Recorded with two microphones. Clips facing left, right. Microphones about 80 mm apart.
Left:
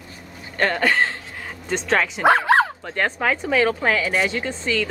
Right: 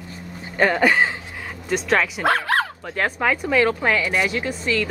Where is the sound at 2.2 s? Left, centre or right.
Left.